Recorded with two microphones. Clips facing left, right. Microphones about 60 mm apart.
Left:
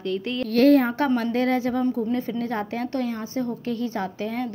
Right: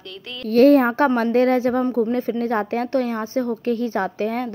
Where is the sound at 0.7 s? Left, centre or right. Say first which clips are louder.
Right 4 dB; right.